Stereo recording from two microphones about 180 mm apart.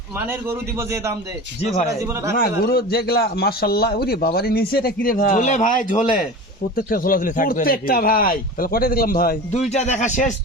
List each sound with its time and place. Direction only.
2.3 s a man's voice: 55° left (ahead or behind)
5.0 s speech: 45° left (ahead or behind)
9.6 s a man's voice: 40° left (ahead or behind)